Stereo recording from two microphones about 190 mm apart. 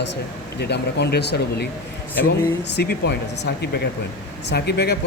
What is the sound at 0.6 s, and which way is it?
Speech, 60° left (ahead or behind).